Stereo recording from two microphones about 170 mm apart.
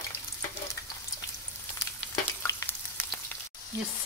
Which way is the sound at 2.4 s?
15° left (ahead or behind).